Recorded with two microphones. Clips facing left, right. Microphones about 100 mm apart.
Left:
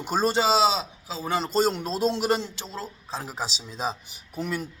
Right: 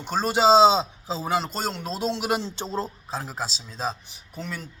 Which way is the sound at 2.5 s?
35° right (ahead or behind).